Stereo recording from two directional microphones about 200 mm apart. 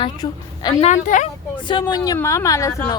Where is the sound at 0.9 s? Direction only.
40° left (ahead or behind).